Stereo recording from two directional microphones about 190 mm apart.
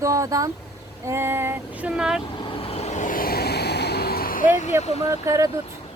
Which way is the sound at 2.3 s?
25° left (ahead or behind).